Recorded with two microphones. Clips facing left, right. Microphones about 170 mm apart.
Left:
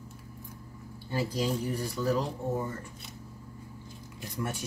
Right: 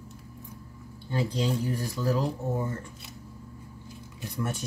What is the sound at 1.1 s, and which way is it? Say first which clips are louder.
Speech: right 2 dB; 5° left (ahead or behind).